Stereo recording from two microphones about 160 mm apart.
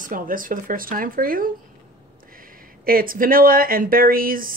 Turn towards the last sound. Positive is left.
turn(degrees=-60)  # may be behind; listen again after turning